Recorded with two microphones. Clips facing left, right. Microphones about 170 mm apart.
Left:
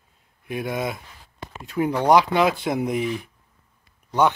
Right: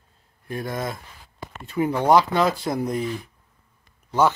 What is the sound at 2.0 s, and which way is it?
Speech, 15° left (ahead or behind).